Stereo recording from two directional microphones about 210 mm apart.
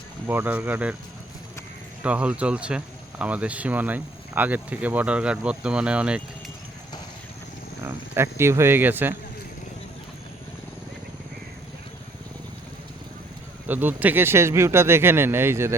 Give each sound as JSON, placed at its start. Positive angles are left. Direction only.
{"t": 0.3, "sound": "speech", "side_deg": -10}
{"t": 2.0, "sound": "speech", "side_deg": -5}
{"t": 7.9, "sound": "speech", "side_deg": -10}
{"t": 13.7, "sound": "speech", "side_deg": -10}